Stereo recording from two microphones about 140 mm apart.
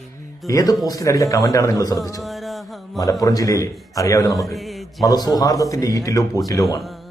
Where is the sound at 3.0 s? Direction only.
25° left (ahead or behind).